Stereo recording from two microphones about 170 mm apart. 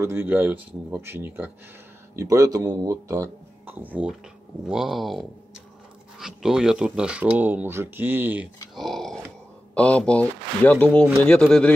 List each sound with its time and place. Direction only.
0.0 s speech: 15° right (ahead or behind)
8.7 s dog: centre (ahead or behind)
9.8 s speech: 5° left (ahead or behind)